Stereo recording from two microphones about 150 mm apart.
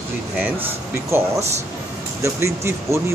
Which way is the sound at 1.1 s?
20° right (ahead or behind).